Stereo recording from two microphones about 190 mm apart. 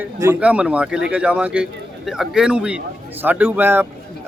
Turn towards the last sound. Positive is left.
turn(degrees=-10)  # may be behind; listen again after turning